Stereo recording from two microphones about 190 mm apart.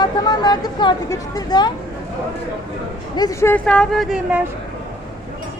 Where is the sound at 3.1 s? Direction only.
15° left (ahead or behind); by 4.5 s 5° right (ahead or behind).